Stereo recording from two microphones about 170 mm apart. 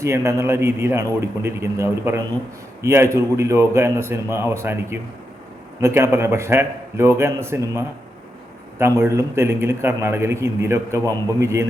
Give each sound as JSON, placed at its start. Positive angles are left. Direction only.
{"t": 0.0, "sound": "a man's voice", "side_deg": -15}